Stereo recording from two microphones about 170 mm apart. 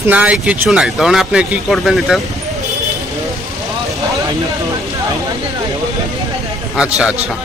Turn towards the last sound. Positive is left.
turn(degrees=-5)  # may be behind; listen again after turning